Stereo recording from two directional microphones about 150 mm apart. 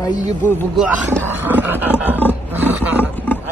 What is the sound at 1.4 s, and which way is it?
Speech, 15° right (ahead or behind).